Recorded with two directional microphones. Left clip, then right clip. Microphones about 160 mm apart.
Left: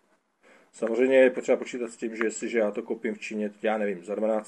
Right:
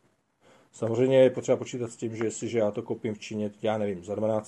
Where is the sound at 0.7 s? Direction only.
15° right (ahead or behind).